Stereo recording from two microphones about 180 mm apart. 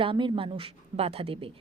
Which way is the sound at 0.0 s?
30° right (ahead or behind).